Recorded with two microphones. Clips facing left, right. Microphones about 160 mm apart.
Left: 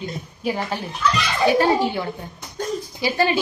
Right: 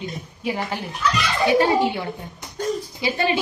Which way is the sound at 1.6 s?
25° right (ahead or behind).